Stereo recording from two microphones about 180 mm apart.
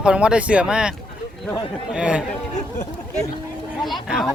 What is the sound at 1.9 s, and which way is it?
Speech, 5° right (ahead or behind).